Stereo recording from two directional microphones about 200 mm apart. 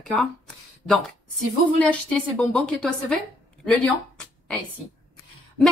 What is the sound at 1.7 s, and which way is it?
A woman's voice, 5° left (ahead or behind).